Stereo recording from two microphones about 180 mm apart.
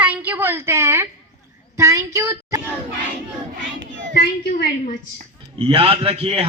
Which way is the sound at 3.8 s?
90° right.